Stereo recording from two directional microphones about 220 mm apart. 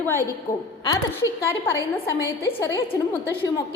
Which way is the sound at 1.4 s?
15° left (ahead or behind).